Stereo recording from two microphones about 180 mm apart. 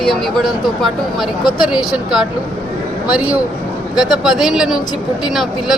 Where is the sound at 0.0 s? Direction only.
Centre (ahead or behind).